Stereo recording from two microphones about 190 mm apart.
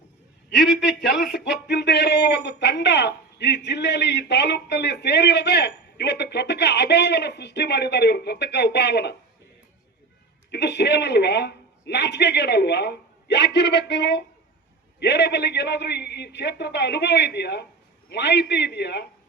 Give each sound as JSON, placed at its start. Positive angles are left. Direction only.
{"t": 0.8, "sound": "speech", "side_deg": 65}
{"t": 10.5, "sound": "speech", "side_deg": 65}